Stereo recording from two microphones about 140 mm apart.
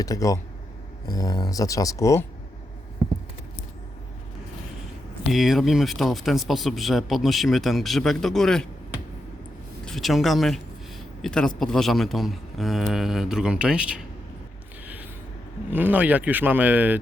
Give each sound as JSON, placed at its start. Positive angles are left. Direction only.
{"t": 0.0, "sound": "speech", "side_deg": 25}
{"t": 5.3, "sound": "a man's voice", "side_deg": 0}
{"t": 9.8, "sound": "a man's voice", "side_deg": 0}
{"t": 15.7, "sound": "speech", "side_deg": -10}